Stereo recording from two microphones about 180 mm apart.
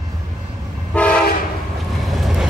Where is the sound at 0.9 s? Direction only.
5° left (ahead or behind).